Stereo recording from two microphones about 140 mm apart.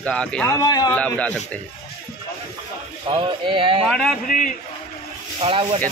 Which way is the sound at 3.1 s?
35° right (ahead or behind).